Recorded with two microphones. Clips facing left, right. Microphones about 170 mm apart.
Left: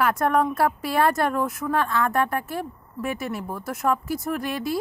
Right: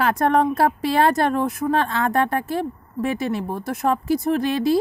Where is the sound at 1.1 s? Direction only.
25° right (ahead or behind).